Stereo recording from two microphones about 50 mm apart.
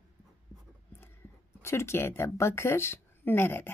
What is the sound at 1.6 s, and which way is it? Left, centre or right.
Speech, left.